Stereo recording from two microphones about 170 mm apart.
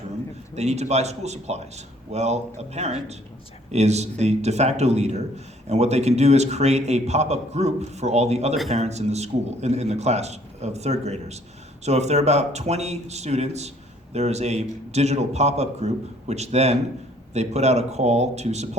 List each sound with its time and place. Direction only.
0.5 s speech: 40° right (ahead or behind)